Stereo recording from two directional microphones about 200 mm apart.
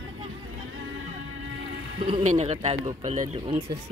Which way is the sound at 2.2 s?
35° right (ahead or behind).